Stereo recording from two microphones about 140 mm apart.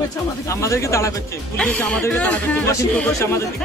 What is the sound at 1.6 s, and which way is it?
Speech, 5° left (ahead or behind).